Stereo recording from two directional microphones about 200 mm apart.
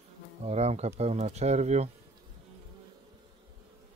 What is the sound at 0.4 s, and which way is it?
Speech, 35° right (ahead or behind).